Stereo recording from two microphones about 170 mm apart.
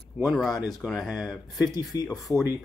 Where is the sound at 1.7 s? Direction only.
20° left (ahead or behind).